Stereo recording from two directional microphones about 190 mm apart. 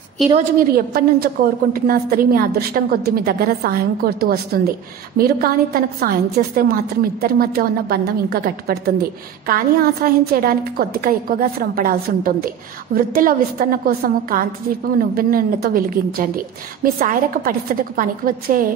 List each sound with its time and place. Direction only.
0.2 s a woman's voice: centre (ahead or behind)
0.6 s a woman's voice: 50° right (ahead or behind)
10.0 s a woman's voice: 50° right (ahead or behind)